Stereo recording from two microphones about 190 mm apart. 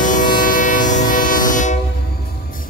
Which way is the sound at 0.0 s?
45° left (ahead or behind).